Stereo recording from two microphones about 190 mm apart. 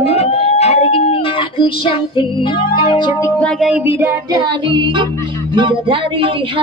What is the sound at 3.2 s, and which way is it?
Music, 5° left (ahead or behind).